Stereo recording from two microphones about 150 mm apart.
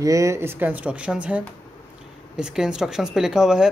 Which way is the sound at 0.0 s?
20° right (ahead or behind).